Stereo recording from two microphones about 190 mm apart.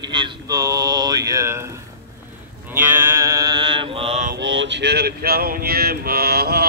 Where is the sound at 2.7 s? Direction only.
10° right (ahead or behind); by 4.3 s 30° right (ahead or behind).